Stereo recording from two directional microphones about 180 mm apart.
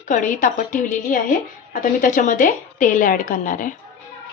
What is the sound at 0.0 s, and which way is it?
A woman's voice, 45° left (ahead or behind).